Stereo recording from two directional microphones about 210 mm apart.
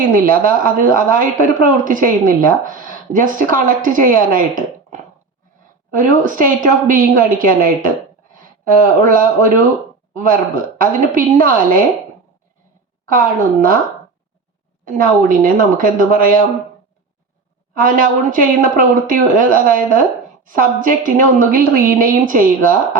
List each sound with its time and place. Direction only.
0.0 s speech: 40° right (ahead or behind)
14.8 s speech: 40° right (ahead or behind)
17.7 s speech: 40° right (ahead or behind)